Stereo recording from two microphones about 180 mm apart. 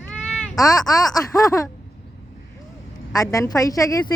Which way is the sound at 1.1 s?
20° left (ahead or behind).